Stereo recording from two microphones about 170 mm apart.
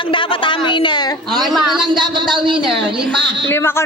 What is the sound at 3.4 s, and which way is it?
Speech, 15° left (ahead or behind).